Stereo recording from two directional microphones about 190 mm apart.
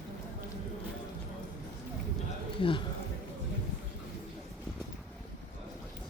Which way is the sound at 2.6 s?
25° left (ahead or behind).